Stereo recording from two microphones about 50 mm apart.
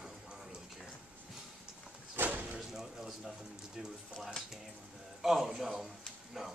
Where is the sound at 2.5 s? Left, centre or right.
Centre.